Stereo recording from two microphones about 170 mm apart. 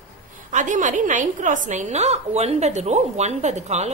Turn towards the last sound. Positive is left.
turn(degrees=-40)  # may be behind; listen again after turning